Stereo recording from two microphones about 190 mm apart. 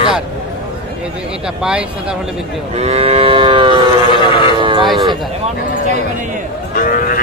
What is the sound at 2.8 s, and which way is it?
Livestock, 35° right (ahead or behind).